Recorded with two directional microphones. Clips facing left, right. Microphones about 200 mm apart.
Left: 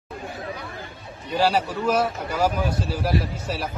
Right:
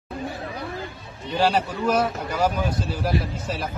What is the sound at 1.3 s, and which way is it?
Speech, 5° left (ahead or behind).